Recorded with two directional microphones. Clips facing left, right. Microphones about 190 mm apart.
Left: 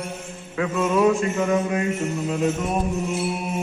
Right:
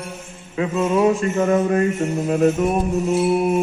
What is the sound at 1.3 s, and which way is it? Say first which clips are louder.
Mantra: right 4 dB; 45° right (ahead or behind).